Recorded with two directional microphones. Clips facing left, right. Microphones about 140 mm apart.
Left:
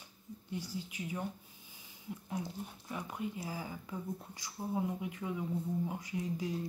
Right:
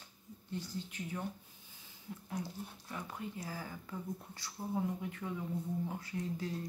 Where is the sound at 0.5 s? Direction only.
10° left (ahead or behind).